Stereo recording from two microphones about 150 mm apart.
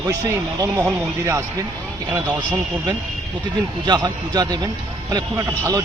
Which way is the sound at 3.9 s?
25° right (ahead or behind).